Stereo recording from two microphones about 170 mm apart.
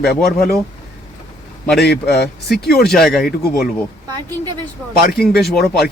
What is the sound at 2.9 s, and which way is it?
Speech, centre (ahead or behind).